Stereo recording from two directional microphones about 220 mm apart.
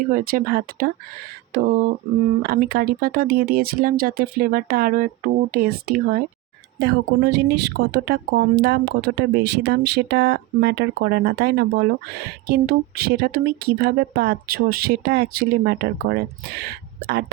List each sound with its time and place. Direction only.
0.1 s speech: 40° right (ahead or behind)